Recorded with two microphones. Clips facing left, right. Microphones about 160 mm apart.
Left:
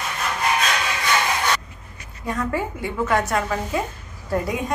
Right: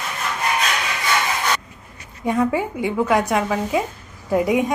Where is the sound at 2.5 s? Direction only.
15° right (ahead or behind).